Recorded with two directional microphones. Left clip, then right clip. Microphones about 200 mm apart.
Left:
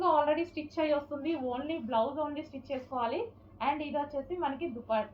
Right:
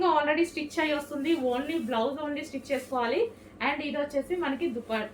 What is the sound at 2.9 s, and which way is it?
Speech, 20° right (ahead or behind).